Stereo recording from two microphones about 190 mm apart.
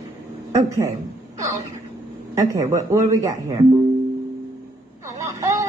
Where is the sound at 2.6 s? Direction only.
40° right (ahead or behind).